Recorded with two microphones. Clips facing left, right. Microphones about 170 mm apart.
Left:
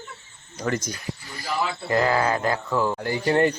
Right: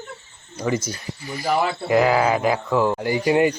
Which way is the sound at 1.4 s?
60° right (ahead or behind).